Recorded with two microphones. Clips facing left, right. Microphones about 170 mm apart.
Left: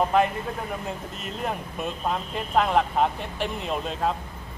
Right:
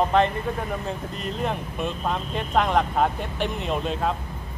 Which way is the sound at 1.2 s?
5° left (ahead or behind).